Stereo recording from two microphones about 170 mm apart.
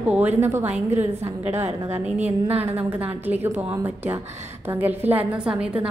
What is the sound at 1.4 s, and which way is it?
Speech, 40° right (ahead or behind).